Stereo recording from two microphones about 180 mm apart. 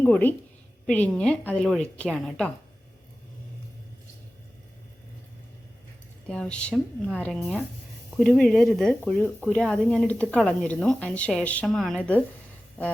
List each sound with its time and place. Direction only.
0.0 s a woman's voice: 10° left (ahead or behind)
6.2 s speech: 5° left (ahead or behind)